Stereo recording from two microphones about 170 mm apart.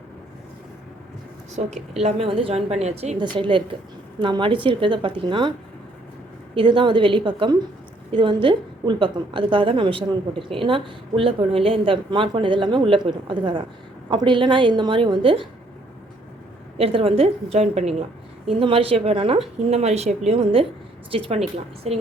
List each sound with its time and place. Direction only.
1.5 s a woman's voice: 40° right (ahead or behind)
16.7 s a woman's voice: 35° right (ahead or behind)